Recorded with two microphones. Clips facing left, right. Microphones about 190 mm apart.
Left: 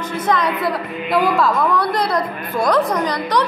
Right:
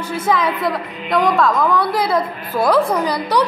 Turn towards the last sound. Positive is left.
turn(degrees=-10)  # may be behind; listen again after turning